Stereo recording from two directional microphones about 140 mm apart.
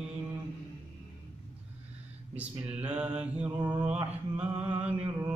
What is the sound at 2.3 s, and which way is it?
Mantra, 10° right (ahead or behind).